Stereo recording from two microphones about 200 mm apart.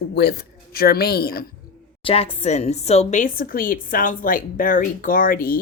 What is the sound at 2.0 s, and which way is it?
A woman's voice, 30° left (ahead or behind).